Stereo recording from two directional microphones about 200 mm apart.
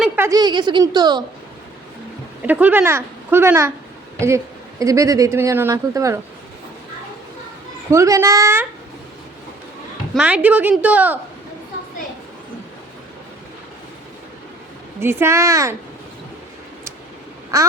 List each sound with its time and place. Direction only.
0.0 s speech: 15° right (ahead or behind)
2.5 s speech: 10° right (ahead or behind)
4.8 s speech: 15° right (ahead or behind)
7.9 s speech: 15° right (ahead or behind)
10.2 s speech: 5° right (ahead or behind)
15.0 s speech: 10° right (ahead or behind)
17.5 s speech: 15° right (ahead or behind)